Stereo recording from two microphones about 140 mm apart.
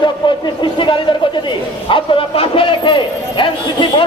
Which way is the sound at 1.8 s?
40° left (ahead or behind).